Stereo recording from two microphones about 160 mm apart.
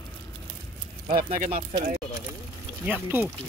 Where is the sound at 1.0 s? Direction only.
55° right (ahead or behind).